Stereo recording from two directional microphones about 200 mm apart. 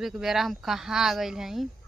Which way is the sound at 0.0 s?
Centre (ahead or behind).